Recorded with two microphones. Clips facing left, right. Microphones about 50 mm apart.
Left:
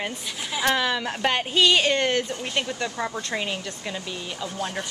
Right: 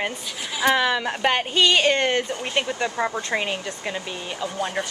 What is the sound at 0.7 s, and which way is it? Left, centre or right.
Speech, centre.